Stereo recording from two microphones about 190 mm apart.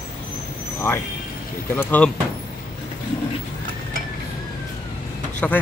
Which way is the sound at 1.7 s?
10° left (ahead or behind).